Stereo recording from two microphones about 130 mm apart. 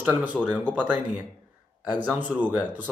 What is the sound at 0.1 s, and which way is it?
Speech, 15° right (ahead or behind).